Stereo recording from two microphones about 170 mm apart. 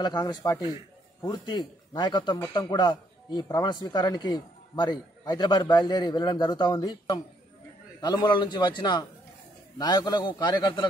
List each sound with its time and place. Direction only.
0.0 s speech: 25° left (ahead or behind)